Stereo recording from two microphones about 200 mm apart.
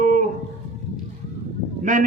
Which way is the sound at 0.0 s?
40° right (ahead or behind).